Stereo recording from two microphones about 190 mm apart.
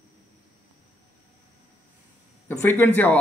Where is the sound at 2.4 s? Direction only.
10° left (ahead or behind).